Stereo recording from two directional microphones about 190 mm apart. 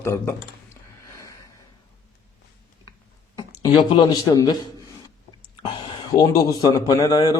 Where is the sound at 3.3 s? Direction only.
25° left (ahead or behind).